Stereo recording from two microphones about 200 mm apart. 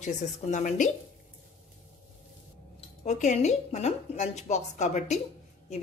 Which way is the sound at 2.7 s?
35° left (ahead or behind).